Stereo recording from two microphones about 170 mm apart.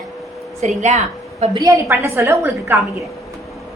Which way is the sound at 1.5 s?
20° right (ahead or behind).